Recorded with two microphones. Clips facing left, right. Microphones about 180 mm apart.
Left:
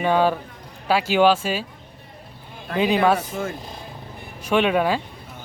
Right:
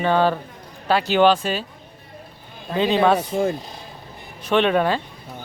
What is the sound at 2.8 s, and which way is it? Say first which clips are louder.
Speech: right 1 dB; 10° left (ahead or behind).